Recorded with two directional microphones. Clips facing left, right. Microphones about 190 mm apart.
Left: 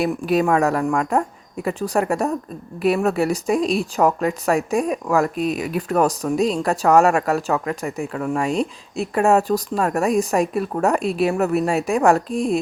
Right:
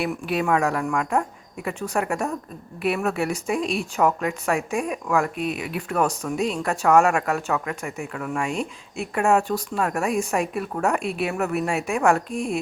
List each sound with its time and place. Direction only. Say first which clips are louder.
0.0 s speech: left 6 dB; 40° left (ahead or behind)